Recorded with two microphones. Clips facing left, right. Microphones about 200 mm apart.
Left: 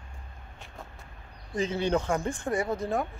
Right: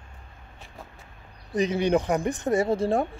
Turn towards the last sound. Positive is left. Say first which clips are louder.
# right 6 dB
turn(degrees=-30)  # may be behind; listen again after turning